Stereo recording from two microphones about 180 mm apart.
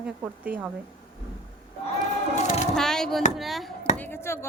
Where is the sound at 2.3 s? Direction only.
40° left (ahead or behind).